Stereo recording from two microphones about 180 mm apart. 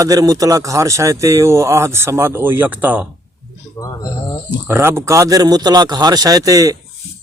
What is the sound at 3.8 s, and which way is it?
Speech, 20° left (ahead or behind).